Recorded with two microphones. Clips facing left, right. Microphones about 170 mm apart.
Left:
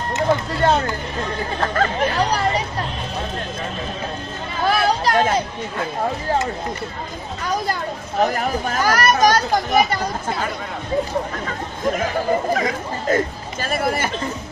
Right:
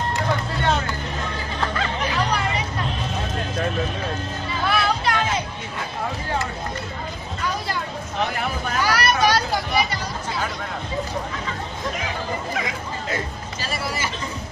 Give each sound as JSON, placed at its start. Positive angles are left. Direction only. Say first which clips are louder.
{"t": 0.6, "sound": "speech", "louder": "left 6 dB", "side_deg": 40}
{"t": 1.8, "sound": "hubbub", "louder": "left 7 dB", "side_deg": 45}
{"t": 4.6, "sound": "children playing", "louder": "left 4 dB", "side_deg": 40}
{"t": 7.6, "sound": "speech", "louder": "left 3 dB", "side_deg": 45}
{"t": 11.4, "sound": "chatter", "louder": "left 5 dB", "side_deg": 50}
{"t": 12.5, "sound": "speech", "louder": "left 5 dB", "side_deg": 45}